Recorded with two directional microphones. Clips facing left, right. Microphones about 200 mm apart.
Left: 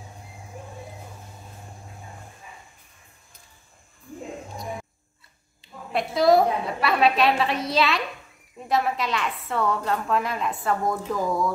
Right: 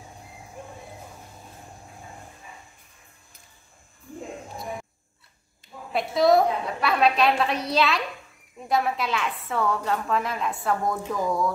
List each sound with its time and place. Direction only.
5.9 s a woman's voice: centre (ahead or behind)